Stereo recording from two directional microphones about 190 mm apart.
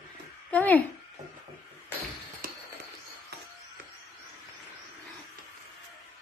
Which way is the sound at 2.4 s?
50° right (ahead or behind).